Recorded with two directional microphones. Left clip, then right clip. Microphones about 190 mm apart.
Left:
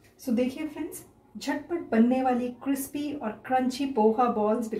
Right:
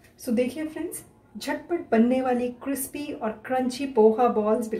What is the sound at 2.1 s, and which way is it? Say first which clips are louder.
A woman's voice: right 2 dB; 15° right (ahead or behind).